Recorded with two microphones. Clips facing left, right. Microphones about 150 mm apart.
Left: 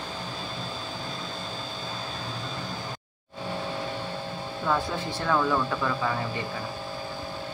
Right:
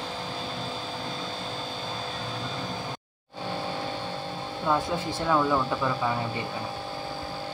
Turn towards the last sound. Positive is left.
turn(degrees=-10)  # may be behind; listen again after turning